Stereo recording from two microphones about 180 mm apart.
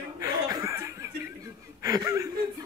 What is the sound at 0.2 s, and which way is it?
Chuckle, 20° right (ahead or behind).